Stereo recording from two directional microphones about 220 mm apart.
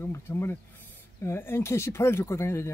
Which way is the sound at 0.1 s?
10° left (ahead or behind).